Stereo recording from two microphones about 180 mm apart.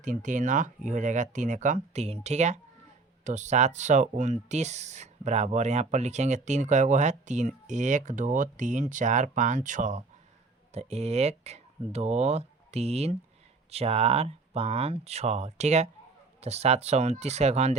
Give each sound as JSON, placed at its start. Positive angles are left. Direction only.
{"t": 0.0, "sound": "speech", "side_deg": -45}